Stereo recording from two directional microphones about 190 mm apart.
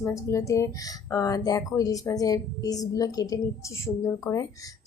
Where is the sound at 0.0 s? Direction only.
15° left (ahead or behind).